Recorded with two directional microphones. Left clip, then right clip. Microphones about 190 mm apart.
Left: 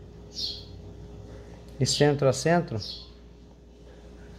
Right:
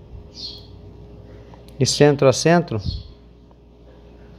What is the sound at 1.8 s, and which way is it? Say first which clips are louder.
Speech: right 8 dB; 25° right (ahead or behind).